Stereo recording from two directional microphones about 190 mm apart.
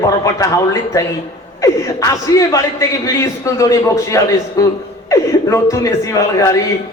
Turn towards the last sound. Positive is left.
turn(degrees=15)  # may be behind; listen again after turning